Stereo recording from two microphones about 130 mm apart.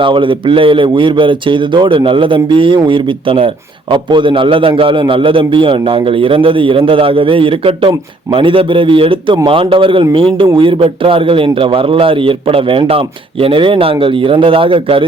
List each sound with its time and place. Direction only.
0.0 s a man's voice: 40° right (ahead or behind)